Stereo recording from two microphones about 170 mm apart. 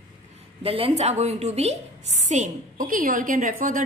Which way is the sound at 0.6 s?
35° right (ahead or behind).